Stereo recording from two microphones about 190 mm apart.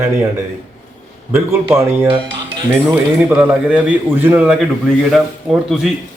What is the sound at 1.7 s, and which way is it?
Speech, 15° right (ahead or behind).